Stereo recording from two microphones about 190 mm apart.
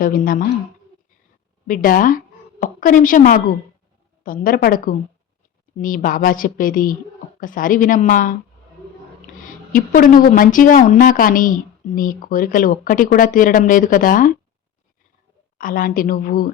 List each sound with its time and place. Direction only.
0.0 s a woman's voice: 45° left (ahead or behind)
1.6 s a woman's voice: 45° left (ahead or behind)
9.7 s a woman's voice: 45° left (ahead or behind)
15.5 s a woman's voice: 45° left (ahead or behind)